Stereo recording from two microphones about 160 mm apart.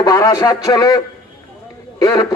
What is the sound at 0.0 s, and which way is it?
Speech, 25° left (ahead or behind).